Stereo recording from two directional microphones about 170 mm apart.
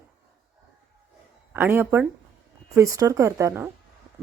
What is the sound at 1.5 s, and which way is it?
Speech, 15° right (ahead or behind).